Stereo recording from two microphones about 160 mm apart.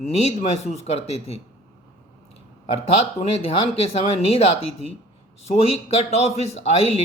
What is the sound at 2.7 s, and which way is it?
Speech, 40° left (ahead or behind).